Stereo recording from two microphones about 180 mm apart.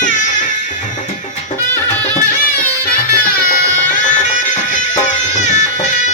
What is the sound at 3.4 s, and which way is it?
Music, 50° left (ahead or behind).